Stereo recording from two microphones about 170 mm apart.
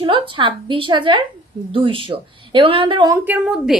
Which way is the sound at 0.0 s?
30° right (ahead or behind).